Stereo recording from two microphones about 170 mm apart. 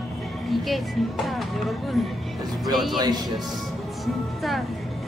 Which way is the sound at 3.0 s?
25° right (ahead or behind).